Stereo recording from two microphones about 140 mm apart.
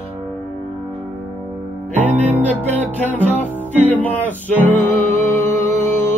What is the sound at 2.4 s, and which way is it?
Music, 10° left (ahead or behind).